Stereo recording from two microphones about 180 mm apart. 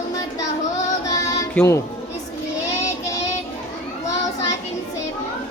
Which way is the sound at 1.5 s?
15° left (ahead or behind).